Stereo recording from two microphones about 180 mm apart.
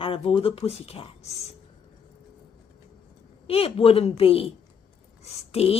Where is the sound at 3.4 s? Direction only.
30° left (ahead or behind).